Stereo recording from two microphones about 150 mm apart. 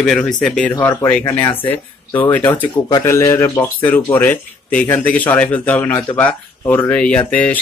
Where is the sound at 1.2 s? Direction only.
30° left (ahead or behind).